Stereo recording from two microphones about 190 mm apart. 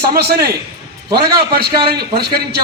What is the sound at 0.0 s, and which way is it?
A man's voice, 55° right (ahead or behind).